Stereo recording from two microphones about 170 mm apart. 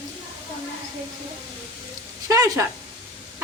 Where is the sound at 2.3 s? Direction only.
20° right (ahead or behind).